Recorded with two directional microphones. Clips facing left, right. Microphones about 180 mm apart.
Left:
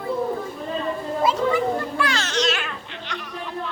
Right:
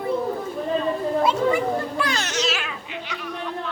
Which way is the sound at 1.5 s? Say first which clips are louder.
Even; 15° right (ahead or behind).